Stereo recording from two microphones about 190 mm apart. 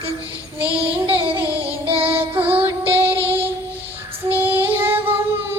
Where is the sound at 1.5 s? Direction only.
30° right (ahead or behind).